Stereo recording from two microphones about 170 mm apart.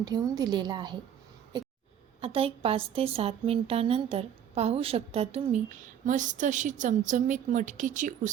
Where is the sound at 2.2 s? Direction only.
35° right (ahead or behind).